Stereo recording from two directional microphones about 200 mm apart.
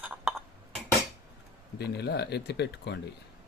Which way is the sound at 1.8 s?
55° left (ahead or behind).